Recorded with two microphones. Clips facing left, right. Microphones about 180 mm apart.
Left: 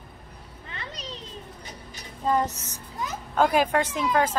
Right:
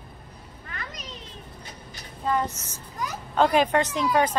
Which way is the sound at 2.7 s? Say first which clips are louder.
Even; 25° left (ahead or behind).